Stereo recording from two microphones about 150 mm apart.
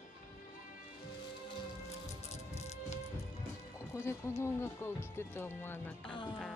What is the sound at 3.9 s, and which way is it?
Speech, 15° left (ahead or behind).